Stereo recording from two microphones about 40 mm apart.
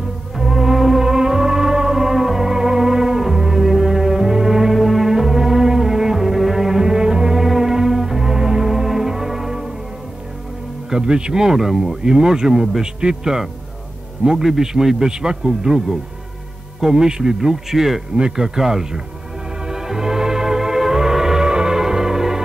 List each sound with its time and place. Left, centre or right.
0.4 s music: centre
10.9 s speech: right
12.0 s speech: centre
19.7 s music: centre